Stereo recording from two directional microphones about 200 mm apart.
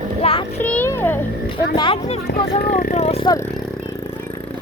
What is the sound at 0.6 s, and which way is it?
Speech, 10° left (ahead or behind).